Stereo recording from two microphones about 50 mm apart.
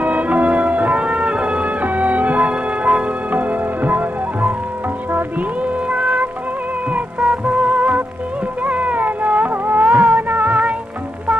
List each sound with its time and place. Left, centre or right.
0.0 s music: right
5.9 s music: right
7.2 s music: right
8.6 s a sound: right
9.8 s music: centre